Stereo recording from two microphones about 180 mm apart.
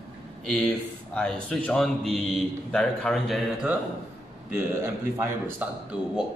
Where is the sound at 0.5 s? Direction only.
5° left (ahead or behind).